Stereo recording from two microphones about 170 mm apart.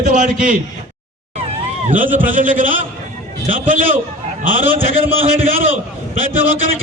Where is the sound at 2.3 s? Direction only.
50° right (ahead or behind).